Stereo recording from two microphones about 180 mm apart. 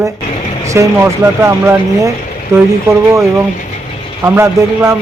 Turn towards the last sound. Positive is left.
turn(degrees=-15)  # may be behind; listen again after turning